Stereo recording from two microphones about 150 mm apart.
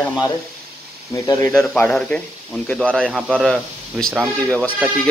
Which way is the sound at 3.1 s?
5° right (ahead or behind).